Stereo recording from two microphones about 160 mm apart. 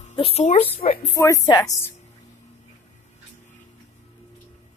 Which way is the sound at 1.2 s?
20° left (ahead or behind).